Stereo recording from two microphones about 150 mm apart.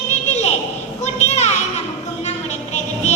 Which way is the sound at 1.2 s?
45° left (ahead or behind).